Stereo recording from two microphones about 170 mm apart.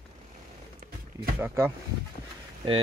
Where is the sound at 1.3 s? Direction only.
15° right (ahead or behind).